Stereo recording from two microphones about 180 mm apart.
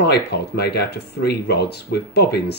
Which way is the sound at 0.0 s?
65° left (ahead or behind).